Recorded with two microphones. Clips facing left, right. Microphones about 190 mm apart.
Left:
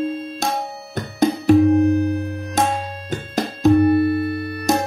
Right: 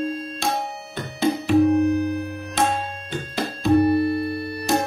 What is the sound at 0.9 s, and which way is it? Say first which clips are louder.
Music: left 4 dB; 40° left (ahead or behind).